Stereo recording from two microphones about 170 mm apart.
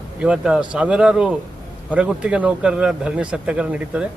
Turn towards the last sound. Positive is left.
turn(degrees=-5)  # may be behind; listen again after turning